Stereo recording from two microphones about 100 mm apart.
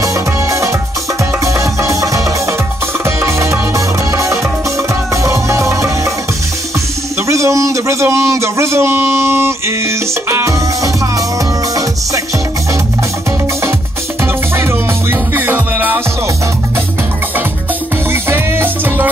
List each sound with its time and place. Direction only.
0.0 s music: 30° right (ahead or behind)
7.2 s a sound: 30° right (ahead or behind)
14.2 s music: 25° right (ahead or behind)
18.1 s music: 20° right (ahead or behind)